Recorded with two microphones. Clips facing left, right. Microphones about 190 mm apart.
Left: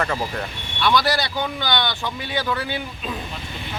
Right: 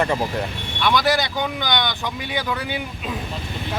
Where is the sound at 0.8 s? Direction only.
20° right (ahead or behind).